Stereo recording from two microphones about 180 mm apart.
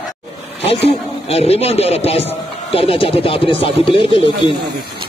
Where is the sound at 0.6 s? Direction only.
35° left (ahead or behind).